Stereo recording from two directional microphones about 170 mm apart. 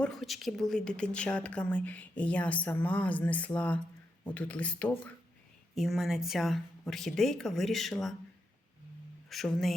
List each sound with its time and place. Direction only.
0.0 s speech: centre (ahead or behind)
9.3 s speech: centre (ahead or behind)